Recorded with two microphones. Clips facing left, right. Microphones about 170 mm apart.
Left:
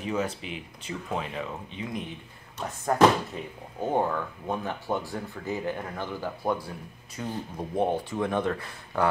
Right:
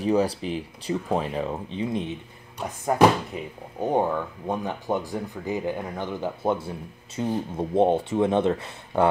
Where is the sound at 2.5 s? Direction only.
10° right (ahead or behind).